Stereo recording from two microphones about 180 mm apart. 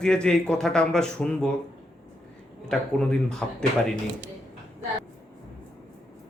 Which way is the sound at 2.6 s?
5° left (ahead or behind).